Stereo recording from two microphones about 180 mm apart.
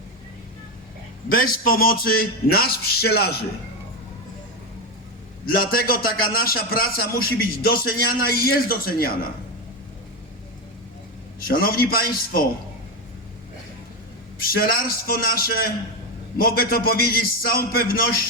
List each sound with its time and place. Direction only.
1.3 s a man's voice: 50° left (ahead or behind)
5.5 s a man's voice: 55° left (ahead or behind)
11.3 s a man's voice: 55° left (ahead or behind)
14.4 s a man's voice: 55° left (ahead or behind)